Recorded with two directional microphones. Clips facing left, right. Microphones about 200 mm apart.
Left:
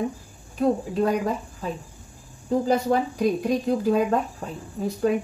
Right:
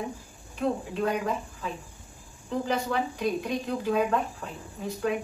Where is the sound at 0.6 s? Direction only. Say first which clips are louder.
Left 6 dB; 40° left (ahead or behind).